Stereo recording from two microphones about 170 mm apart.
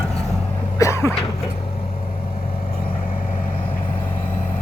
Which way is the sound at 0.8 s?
20° left (ahead or behind).